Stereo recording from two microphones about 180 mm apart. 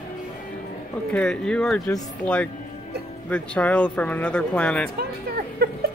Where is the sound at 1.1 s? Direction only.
5° left (ahead or behind).